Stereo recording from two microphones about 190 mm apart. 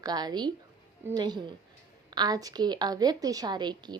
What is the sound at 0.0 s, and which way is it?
A woman's voice, 20° right (ahead or behind).